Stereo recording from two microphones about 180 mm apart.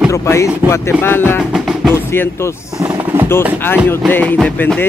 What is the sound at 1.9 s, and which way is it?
Speech, 15° left (ahead or behind).